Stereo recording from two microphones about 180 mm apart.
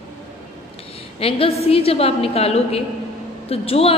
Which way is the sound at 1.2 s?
35° left (ahead or behind).